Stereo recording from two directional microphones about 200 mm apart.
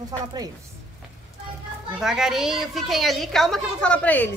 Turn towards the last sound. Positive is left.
turn(degrees=5)  # may be behind; listen again after turning